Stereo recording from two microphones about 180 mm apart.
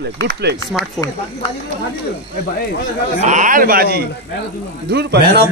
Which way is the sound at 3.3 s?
45° right (ahead or behind).